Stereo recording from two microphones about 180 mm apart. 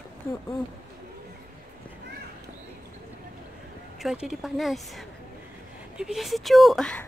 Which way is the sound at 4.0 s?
5° right (ahead or behind).